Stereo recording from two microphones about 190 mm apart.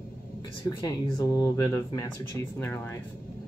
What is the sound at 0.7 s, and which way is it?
Speech, 20° left (ahead or behind).